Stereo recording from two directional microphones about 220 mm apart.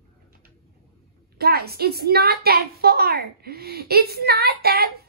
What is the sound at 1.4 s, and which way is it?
A woman's voice, 45° right (ahead or behind).